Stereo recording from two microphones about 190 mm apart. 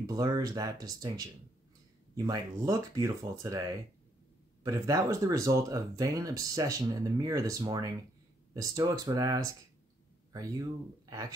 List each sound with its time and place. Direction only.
0.0 s speech: 20° right (ahead or behind)
4.6 s speech: 15° right (ahead or behind)
11.1 s speech: 20° right (ahead or behind)